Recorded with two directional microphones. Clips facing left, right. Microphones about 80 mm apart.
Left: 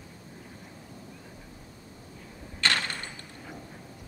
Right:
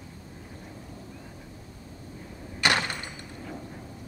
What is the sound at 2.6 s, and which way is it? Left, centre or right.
Door, centre.